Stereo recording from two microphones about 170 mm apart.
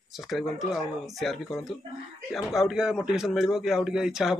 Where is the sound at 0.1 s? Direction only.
Centre (ahead or behind).